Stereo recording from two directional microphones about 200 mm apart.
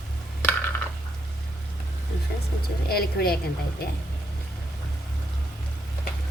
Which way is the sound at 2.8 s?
50° left (ahead or behind).